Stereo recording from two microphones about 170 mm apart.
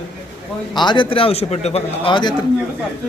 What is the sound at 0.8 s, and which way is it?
A man's voice, 25° left (ahead or behind).